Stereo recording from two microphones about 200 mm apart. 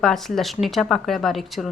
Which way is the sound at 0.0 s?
Centre (ahead or behind).